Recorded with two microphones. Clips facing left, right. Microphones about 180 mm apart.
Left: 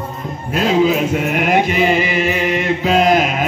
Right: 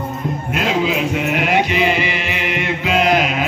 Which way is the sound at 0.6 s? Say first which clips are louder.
Left 5 dB; 40° left (ahead or behind).